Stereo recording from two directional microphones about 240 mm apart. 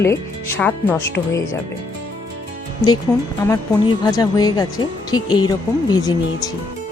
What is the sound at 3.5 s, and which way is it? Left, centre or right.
Speech, centre.